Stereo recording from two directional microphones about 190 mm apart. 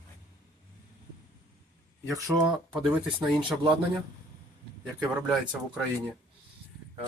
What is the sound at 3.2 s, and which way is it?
Speech, 5° right (ahead or behind).